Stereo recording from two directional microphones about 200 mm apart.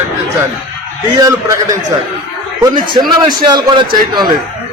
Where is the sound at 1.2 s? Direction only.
15° right (ahead or behind).